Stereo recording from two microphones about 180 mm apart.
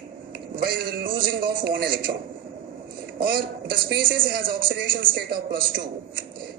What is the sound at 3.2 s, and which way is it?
A man's voice, 55° right (ahead or behind).